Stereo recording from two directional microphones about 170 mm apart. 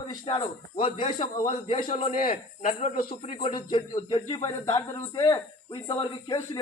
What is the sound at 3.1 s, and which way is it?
A man's voice, 30° left (ahead or behind).